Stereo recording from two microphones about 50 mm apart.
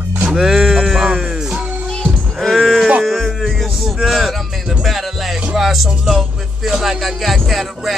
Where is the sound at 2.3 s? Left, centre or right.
Centre.